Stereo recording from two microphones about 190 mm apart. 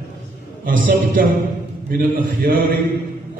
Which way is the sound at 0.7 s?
45° right (ahead or behind).